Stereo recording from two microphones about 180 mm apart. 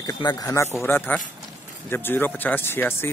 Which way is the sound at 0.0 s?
20° left (ahead or behind).